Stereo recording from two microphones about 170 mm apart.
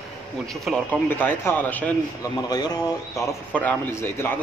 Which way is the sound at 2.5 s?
25° left (ahead or behind).